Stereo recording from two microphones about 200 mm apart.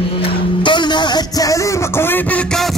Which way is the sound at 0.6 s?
20° left (ahead or behind).